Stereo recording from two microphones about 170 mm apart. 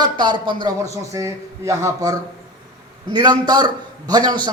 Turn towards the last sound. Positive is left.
turn(degrees=-25)  # may be behind; listen again after turning